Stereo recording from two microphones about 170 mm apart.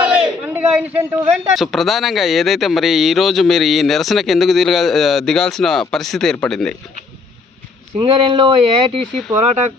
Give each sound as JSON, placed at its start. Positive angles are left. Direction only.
{"t": 0.0, "sound": "a sound", "side_deg": -10}
{"t": 1.5, "sound": "speech", "side_deg": 0}
{"t": 7.9, "sound": "speech", "side_deg": -30}